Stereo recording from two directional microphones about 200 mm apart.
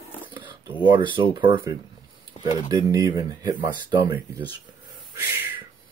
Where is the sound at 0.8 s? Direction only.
25° right (ahead or behind).